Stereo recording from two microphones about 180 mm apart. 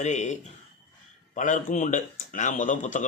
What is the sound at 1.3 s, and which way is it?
Speech, 45° left (ahead or behind).